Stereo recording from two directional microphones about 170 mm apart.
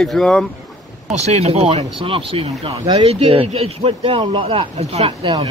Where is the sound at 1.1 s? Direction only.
40° right (ahead or behind).